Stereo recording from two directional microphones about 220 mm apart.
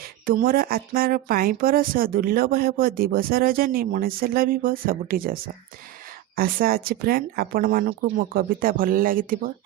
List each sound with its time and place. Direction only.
0.3 s speech: 40° right (ahead or behind)